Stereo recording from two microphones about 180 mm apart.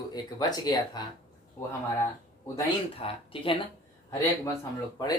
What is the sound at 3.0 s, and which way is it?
Speech, 30° left (ahead or behind).